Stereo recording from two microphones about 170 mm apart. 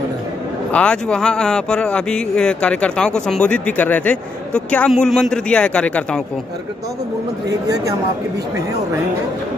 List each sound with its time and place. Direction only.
0.7 s speech: 5° left (ahead or behind)
7.4 s speech: 20° right (ahead or behind)